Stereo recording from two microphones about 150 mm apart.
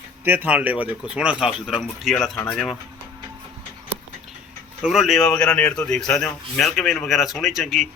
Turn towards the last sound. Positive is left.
turn(degrees=0)  # may be behind; listen again after turning